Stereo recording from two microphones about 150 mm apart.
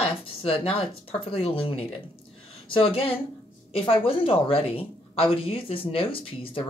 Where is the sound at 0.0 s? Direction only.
40° left (ahead or behind).